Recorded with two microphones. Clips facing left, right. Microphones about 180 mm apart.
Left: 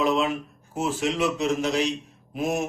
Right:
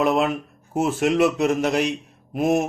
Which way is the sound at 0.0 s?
55° right (ahead or behind).